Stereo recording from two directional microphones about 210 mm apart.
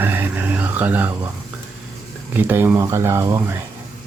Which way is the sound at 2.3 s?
10° right (ahead or behind).